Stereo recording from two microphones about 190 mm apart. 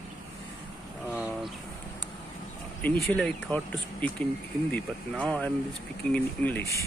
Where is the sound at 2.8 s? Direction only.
10° left (ahead or behind).